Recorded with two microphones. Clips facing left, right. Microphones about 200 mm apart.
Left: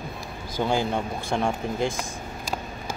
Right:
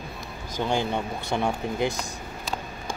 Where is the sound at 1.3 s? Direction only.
5° right (ahead or behind).